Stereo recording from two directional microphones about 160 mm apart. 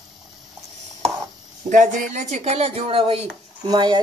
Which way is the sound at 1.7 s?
50° right (ahead or behind).